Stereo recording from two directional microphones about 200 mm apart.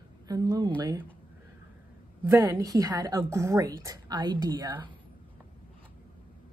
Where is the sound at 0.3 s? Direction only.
20° right (ahead or behind).